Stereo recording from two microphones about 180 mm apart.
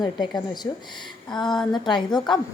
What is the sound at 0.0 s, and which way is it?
Speech, 25° left (ahead or behind).